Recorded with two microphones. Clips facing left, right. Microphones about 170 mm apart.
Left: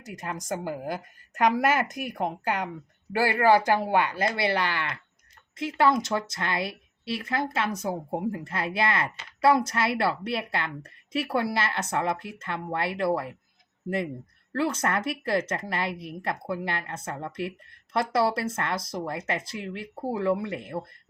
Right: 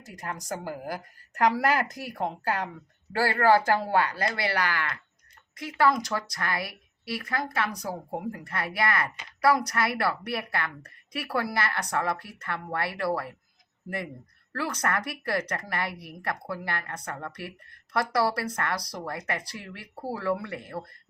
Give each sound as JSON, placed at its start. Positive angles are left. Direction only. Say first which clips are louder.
{"t": 0.0, "sound": "a woman's voice", "louder": "left 2 dB", "side_deg": 20}
{"t": 14.5, "sound": "a woman's voice", "louder": "left 3 dB", "side_deg": 25}